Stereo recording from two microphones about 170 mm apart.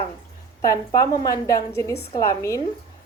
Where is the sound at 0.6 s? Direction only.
20° left (ahead or behind).